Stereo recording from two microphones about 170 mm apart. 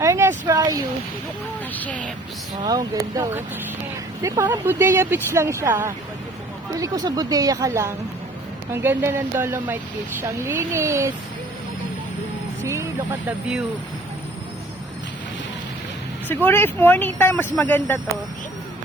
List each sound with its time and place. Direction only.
0.0 s speech: 15° right (ahead or behind)
1.7 s speech: 10° left (ahead or behind)
2.6 s speech: 20° right (ahead or behind)
12.6 s speech: 15° right (ahead or behind)
16.3 s speech: 15° left (ahead or behind)